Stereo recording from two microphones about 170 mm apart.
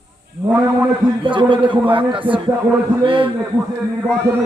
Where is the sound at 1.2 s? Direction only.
30° right (ahead or behind).